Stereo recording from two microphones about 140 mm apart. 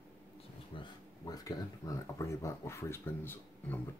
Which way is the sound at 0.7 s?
30° left (ahead or behind).